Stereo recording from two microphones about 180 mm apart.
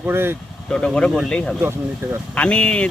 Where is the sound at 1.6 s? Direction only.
15° right (ahead or behind).